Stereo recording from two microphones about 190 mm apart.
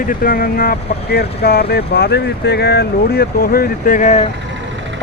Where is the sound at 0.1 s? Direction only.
50° left (ahead or behind).